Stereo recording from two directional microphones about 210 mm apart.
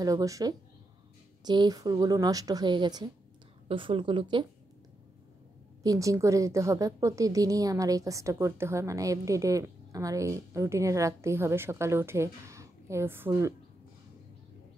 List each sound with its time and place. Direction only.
0.0 s a woman's voice: 15° right (ahead or behind)
5.8 s a woman's voice: 15° right (ahead or behind)